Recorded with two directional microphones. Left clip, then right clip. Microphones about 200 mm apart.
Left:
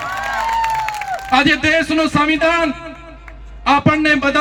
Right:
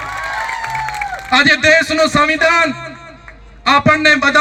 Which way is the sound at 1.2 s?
45° right (ahead or behind).